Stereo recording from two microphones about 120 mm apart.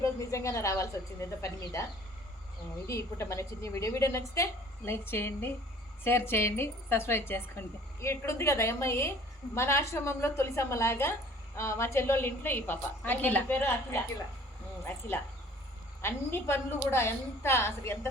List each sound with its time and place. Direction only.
0.0 s a woman's voice: 25° left (ahead or behind)
2.8 s a woman's voice: 25° left (ahead or behind)
16.0 s a woman's voice: 20° left (ahead or behind)